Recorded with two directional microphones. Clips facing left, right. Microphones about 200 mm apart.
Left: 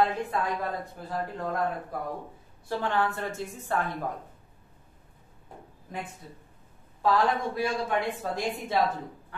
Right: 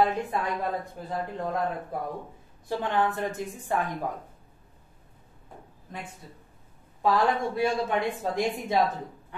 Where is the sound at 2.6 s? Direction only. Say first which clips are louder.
Right 1 dB; 20° right (ahead or behind).